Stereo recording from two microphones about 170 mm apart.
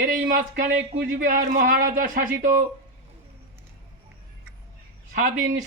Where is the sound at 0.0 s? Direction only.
60° right (ahead or behind).